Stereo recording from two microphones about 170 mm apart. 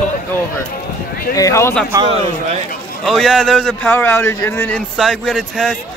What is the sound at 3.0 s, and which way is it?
A man's voice, centre (ahead or behind).